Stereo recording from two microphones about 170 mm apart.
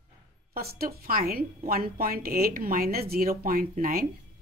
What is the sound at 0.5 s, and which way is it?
A woman's voice, 60° right (ahead or behind).